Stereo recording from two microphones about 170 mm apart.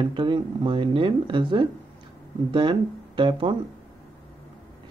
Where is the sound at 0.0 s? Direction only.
30° right (ahead or behind).